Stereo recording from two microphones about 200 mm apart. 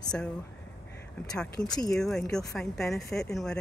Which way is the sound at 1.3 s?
5° left (ahead or behind).